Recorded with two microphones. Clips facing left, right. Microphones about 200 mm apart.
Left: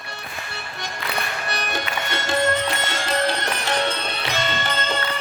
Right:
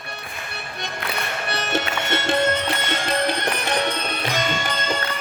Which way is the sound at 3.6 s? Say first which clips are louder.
Left 2 dB; 15° right (ahead or behind).